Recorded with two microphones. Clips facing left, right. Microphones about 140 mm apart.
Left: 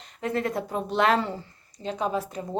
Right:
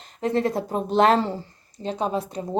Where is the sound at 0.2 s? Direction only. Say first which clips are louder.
Right 4 dB; 30° right (ahead or behind).